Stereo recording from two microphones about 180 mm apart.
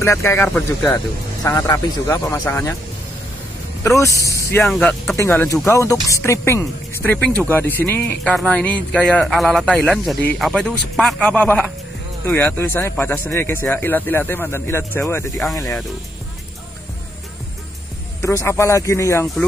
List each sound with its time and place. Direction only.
0.0 s speech: 15° left (ahead or behind)
0.9 s speech: 20° left (ahead or behind)
4.0 s speech: 15° left (ahead or behind)
4.6 s speech: centre (ahead or behind)
18.2 s speech: 15° left (ahead or behind)